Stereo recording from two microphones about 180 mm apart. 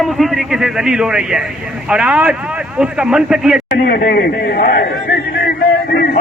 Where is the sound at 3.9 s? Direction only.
55° left (ahead or behind).